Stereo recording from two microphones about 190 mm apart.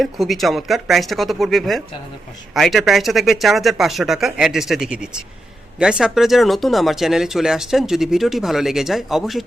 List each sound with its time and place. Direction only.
0.0 s speech: centre (ahead or behind)